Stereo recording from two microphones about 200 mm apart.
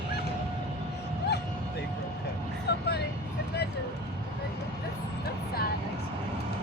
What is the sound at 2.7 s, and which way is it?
Vehicle, 55° left (ahead or behind).